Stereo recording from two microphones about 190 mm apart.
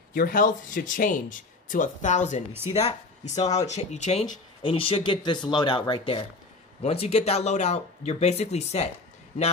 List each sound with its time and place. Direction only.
0.1 s speech: 45° left (ahead or behind)